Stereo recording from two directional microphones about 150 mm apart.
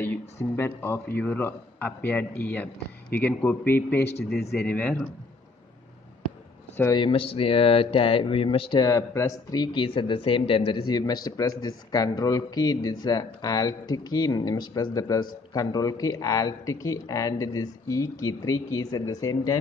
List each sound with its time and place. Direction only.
0.0 s a man's voice: 15° left (ahead or behind)
7.0 s speech: 35° left (ahead or behind); by 19.6 s 20° left (ahead or behind)